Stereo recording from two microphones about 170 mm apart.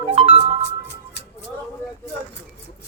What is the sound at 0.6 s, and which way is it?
Music, 85° left.